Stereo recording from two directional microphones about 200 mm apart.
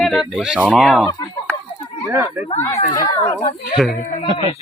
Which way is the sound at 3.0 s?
15° left (ahead or behind).